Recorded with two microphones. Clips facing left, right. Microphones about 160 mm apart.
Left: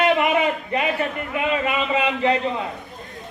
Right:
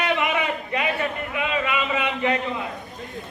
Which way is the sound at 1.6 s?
30° left (ahead or behind).